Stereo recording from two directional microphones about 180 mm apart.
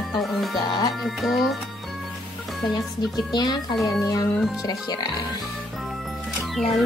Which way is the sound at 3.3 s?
25° left (ahead or behind).